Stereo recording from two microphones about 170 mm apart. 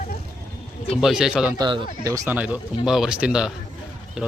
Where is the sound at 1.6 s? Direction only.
30° right (ahead or behind).